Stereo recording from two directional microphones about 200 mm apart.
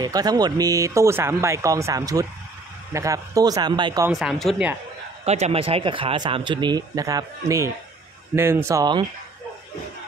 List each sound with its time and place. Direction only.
0.0 s speech: 20° right (ahead or behind)
4.1 s speech: centre (ahead or behind)
5.2 s speech: 30° right (ahead or behind)